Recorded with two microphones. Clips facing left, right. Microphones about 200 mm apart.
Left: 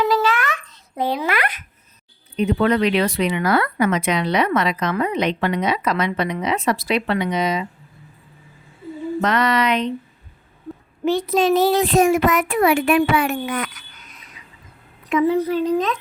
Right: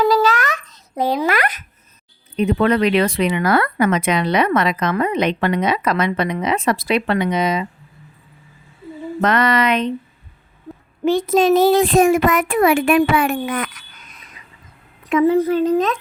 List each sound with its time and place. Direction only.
0.0 s babbling: 40° right (ahead or behind)
2.6 s speech: 55° right (ahead or behind)
9.2 s speech: 50° right (ahead or behind)
11.3 s speech: 50° right (ahead or behind)
15.1 s speech: 50° right (ahead or behind)